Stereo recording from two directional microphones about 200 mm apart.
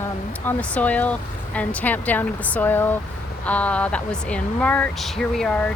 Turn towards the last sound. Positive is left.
turn(degrees=5)  # may be behind; listen again after turning